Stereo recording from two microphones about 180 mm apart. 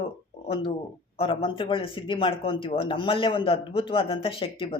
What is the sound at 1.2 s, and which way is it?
Speech, 30° left (ahead or behind).